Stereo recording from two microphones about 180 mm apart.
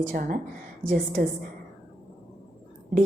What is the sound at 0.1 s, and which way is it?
Speech, 50° right (ahead or behind).